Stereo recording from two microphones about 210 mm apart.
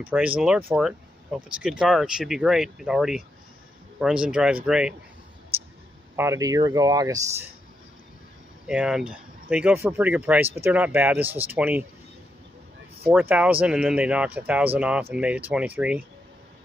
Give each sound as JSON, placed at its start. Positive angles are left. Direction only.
{"t": 0.0, "sound": "speech", "side_deg": -5}
{"t": 6.1, "sound": "speech", "side_deg": -15}
{"t": 8.6, "sound": "speech", "side_deg": -5}
{"t": 13.1, "sound": "speech", "side_deg": -10}